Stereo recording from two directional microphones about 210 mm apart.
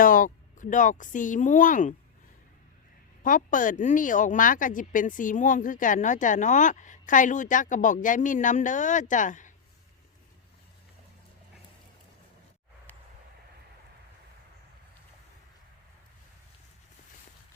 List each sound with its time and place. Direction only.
0.0 s speech: 40° left (ahead or behind)
3.2 s speech: 40° left (ahead or behind)